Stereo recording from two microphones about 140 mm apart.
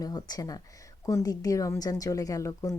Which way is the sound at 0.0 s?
25° left (ahead or behind).